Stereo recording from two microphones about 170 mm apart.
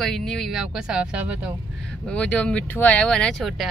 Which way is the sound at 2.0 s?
5° left (ahead or behind).